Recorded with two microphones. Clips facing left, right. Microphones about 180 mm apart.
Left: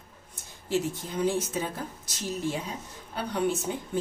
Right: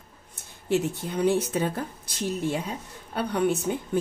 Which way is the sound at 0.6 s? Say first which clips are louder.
Right 3 dB; 60° right (ahead or behind).